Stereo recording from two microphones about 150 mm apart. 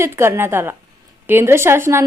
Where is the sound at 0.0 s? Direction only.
15° right (ahead or behind).